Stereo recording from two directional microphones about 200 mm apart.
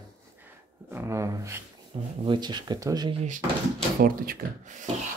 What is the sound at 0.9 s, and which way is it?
Speech, 15° right (ahead or behind).